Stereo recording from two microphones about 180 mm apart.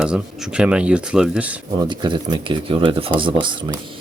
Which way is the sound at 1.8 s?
25° right (ahead or behind).